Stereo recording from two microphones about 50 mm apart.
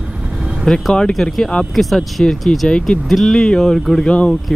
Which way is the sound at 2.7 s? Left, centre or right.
Centre.